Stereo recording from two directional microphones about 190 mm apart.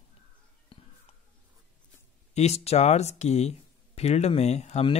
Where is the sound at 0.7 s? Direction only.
25° left (ahead or behind).